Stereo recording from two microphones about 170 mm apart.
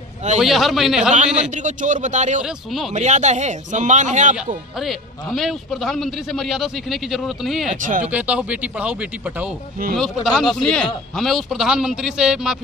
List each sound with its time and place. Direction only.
0.4 s a man's voice: centre (ahead or behind)
1.4 s speech: 45° right (ahead or behind)
2.4 s a man's voice: centre (ahead or behind)
2.9 s speech: 45° right (ahead or behind)
4.7 s a man's voice: centre (ahead or behind)
7.7 s speech: 50° right (ahead or behind)
8.1 s a man's voice: 10° right (ahead or behind)